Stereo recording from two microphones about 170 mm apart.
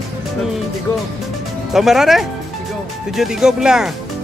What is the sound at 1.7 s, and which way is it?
Speech, centre (ahead or behind).